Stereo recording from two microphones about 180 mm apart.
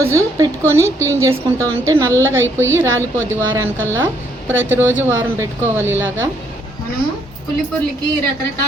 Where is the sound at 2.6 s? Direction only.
15° right (ahead or behind).